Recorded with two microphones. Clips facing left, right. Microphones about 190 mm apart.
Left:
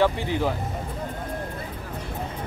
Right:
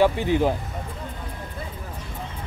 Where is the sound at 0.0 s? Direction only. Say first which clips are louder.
Right 3 dB; 15° right (ahead or behind).